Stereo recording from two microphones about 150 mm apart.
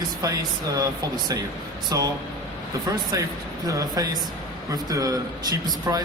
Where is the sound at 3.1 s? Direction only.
25° right (ahead or behind).